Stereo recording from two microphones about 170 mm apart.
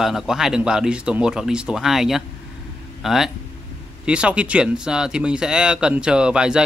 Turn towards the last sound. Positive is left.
turn(degrees=-5)  # may be behind; listen again after turning